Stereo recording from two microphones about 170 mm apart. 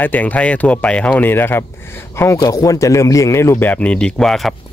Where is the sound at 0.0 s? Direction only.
10° left (ahead or behind).